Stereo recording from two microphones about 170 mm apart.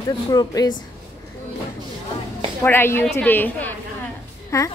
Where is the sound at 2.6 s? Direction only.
15° left (ahead or behind).